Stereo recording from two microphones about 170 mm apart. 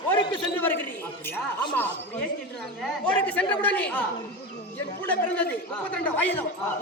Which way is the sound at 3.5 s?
10° left (ahead or behind).